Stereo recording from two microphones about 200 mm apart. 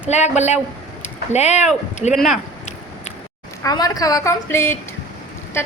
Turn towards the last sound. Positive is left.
turn(degrees=10)  # may be behind; listen again after turning